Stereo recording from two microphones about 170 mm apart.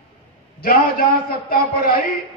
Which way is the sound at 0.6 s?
55° left (ahead or behind).